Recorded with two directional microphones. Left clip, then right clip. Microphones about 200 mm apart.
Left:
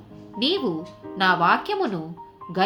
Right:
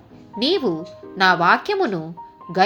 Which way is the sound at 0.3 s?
30° right (ahead or behind).